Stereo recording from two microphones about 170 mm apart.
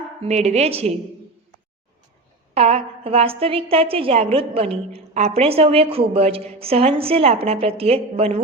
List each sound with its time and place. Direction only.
0.2 s a woman's voice: 40° right (ahead or behind)
2.6 s a woman's voice: 35° right (ahead or behind)